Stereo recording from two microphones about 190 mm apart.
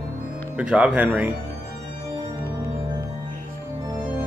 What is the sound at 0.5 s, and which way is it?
Speech, 5° right (ahead or behind).